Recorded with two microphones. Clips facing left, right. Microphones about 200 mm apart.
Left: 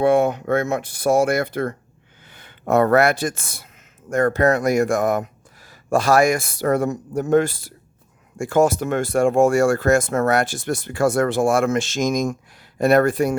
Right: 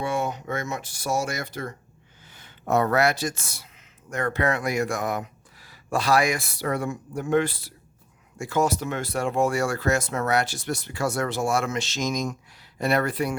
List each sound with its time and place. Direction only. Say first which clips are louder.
0.0 s speech: left 11 dB; 55° left (ahead or behind)